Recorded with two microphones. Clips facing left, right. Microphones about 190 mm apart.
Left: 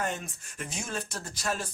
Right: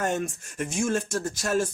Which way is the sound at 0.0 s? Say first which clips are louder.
Right 6 dB; 45° right (ahead or behind).